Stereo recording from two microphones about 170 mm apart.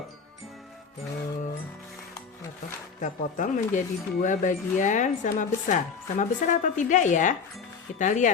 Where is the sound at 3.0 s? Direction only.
50° left (ahead or behind).